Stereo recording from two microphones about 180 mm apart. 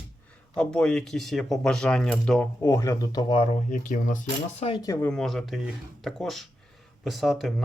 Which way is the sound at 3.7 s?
45° left (ahead or behind).